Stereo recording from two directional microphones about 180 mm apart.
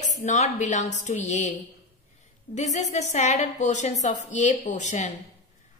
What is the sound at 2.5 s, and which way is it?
A woman's voice, 40° left (ahead or behind).